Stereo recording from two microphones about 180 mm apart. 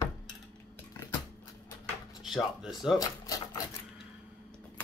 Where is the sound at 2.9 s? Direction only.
20° left (ahead or behind).